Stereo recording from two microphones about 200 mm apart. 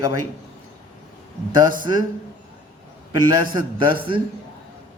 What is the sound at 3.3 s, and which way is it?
Speech, 25° right (ahead or behind).